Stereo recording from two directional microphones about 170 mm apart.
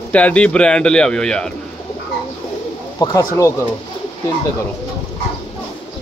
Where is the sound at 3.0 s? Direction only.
20° left (ahead or behind).